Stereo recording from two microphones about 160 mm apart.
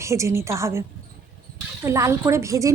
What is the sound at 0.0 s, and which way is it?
A woman's voice, 20° right (ahead or behind).